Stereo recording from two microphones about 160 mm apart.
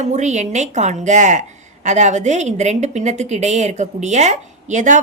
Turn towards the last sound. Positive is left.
turn(degrees=-50)  # may be behind; listen again after turning